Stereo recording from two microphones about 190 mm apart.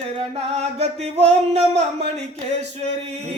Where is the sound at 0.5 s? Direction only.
35° right (ahead or behind).